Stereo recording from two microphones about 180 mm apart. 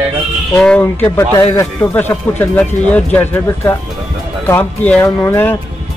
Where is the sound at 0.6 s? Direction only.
10° left (ahead or behind).